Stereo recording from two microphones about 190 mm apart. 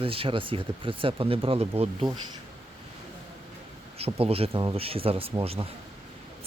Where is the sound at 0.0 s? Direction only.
30° right (ahead or behind).